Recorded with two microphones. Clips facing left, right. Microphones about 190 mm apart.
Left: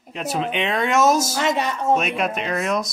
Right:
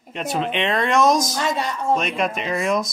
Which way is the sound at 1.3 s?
20° left (ahead or behind).